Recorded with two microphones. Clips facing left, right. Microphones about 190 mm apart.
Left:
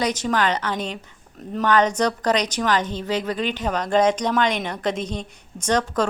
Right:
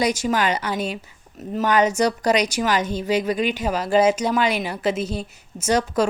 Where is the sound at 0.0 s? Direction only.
10° right (ahead or behind).